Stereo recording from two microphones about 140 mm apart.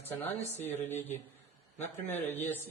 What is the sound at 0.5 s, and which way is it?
Speech, 15° left (ahead or behind).